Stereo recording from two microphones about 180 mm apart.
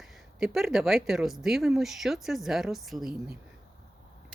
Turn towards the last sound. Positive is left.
turn(degrees=0)  # may be behind; listen again after turning